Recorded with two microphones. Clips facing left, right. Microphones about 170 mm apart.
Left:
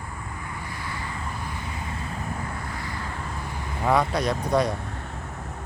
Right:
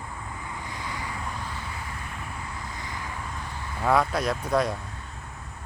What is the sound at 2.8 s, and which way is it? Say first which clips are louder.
Vehicle: left 3 dB; 20° right (ahead or behind).